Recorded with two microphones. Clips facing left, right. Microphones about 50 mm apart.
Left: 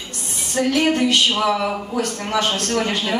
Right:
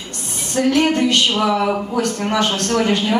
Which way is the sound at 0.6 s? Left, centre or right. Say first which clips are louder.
Right 3 dB; centre.